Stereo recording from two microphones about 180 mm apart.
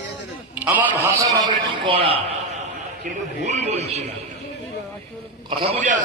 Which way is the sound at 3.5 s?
35° right (ahead or behind).